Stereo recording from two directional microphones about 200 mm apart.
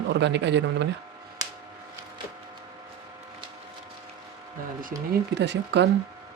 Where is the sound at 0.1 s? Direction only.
60° right (ahead or behind).